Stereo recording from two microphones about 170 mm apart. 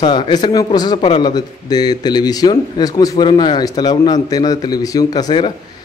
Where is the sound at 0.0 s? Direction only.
25° left (ahead or behind).